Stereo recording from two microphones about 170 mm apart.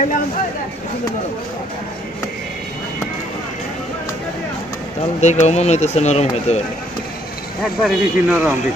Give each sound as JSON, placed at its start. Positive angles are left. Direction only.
{"t": 5.2, "sound": "speech", "side_deg": 40}
{"t": 7.6, "sound": "a man's voice", "side_deg": -5}